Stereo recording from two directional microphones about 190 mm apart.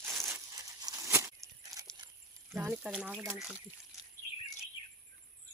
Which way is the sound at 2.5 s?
10° right (ahead or behind).